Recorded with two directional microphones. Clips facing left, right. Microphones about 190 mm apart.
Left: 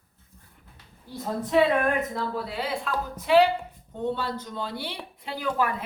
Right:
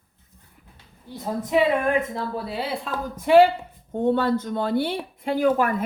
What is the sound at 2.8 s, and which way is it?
A woman's voice, 50° right (ahead or behind).